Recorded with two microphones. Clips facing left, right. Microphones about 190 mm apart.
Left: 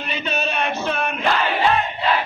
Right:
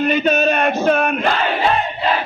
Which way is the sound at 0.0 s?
50° right (ahead or behind).